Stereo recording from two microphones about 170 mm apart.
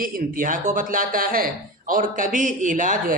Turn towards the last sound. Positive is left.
turn(degrees=-50)  # may be behind; listen again after turning